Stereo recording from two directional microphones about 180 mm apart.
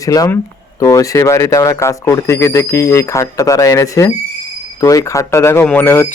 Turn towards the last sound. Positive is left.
turn(degrees=10)  # may be behind; listen again after turning